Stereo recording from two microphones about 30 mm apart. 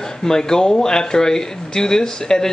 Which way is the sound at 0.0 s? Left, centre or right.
Centre.